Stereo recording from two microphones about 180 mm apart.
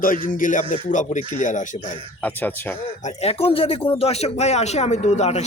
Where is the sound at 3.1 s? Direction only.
35° left (ahead or behind).